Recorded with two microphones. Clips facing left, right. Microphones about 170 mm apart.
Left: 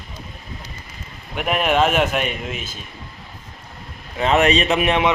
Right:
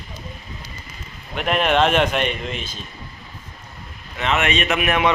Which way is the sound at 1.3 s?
5° left (ahead or behind).